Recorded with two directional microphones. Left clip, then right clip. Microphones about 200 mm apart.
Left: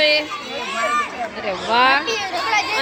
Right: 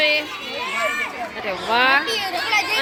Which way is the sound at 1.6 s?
10° left (ahead or behind).